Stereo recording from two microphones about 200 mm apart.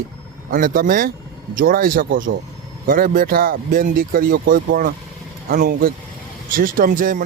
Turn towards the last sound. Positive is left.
turn(degrees=-45)  # may be behind; listen again after turning